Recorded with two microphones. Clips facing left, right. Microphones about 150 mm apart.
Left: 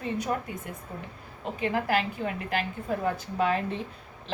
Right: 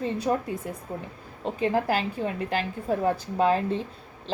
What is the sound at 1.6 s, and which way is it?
A woman's voice, 35° right (ahead or behind).